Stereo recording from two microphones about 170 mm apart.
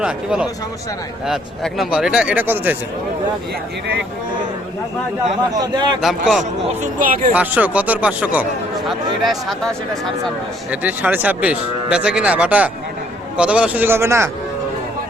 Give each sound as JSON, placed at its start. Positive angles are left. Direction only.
{"t": 0.0, "sound": "speech", "side_deg": -5}
{"t": 5.5, "sound": "a man's voice", "side_deg": -25}
{"t": 6.0, "sound": "speech", "side_deg": 0}
{"t": 6.8, "sound": "speech", "side_deg": -50}
{"t": 7.3, "sound": "speech", "side_deg": -10}
{"t": 10.8, "sound": "speech", "side_deg": -10}